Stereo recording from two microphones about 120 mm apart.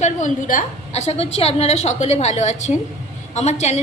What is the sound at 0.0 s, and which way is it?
A woman's voice, 90° left.